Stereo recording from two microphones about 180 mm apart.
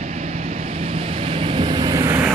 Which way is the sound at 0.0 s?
40° right (ahead or behind).